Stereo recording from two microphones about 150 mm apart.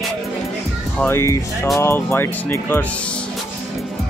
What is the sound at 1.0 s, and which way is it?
Speech, 15° left (ahead or behind).